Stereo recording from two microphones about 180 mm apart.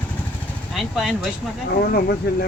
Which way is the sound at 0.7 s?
Centre (ahead or behind).